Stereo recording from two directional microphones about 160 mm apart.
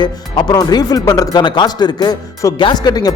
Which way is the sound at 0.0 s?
25° left (ahead or behind).